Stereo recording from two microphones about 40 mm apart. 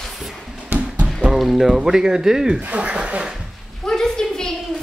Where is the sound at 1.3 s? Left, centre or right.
Centre.